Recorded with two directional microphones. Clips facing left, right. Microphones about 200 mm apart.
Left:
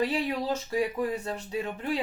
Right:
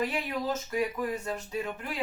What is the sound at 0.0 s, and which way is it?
Speech, 30° left (ahead or behind).